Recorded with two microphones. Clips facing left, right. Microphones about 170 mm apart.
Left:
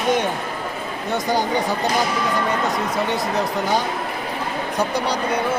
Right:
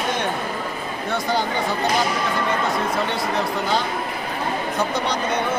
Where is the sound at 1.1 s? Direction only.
15° left (ahead or behind).